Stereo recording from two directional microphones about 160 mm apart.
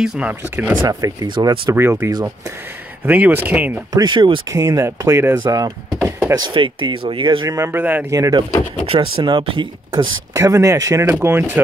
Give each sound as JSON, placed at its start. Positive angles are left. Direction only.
{"t": 0.0, "sound": "speech", "side_deg": -5}
{"t": 0.8, "sound": "speech", "side_deg": -25}
{"t": 3.9, "sound": "speech", "side_deg": -25}
{"t": 7.5, "sound": "speech", "side_deg": -15}
{"t": 8.2, "sound": "speech", "side_deg": -25}
{"t": 8.8, "sound": "speech", "side_deg": -35}
{"t": 10.3, "sound": "speech", "side_deg": -20}